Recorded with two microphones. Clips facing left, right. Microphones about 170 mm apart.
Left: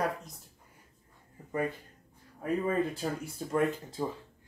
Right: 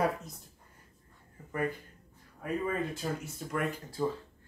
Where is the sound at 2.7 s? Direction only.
35° left (ahead or behind).